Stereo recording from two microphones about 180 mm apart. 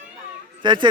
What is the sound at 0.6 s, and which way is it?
Speech, 25° right (ahead or behind).